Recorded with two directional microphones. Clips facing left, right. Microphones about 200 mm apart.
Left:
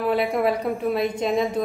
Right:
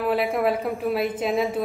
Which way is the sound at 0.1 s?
Centre (ahead or behind).